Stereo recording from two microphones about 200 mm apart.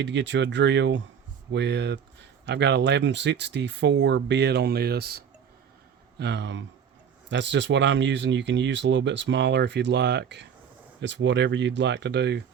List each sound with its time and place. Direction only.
0.0 s speech: 65° right (ahead or behind)